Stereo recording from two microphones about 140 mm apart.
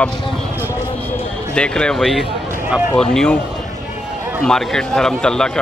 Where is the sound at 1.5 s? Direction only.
5° left (ahead or behind).